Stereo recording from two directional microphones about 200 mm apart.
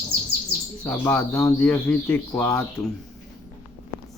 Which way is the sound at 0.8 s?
10° left (ahead or behind).